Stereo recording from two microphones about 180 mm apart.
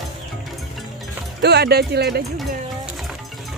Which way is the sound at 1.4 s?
65° right (ahead or behind).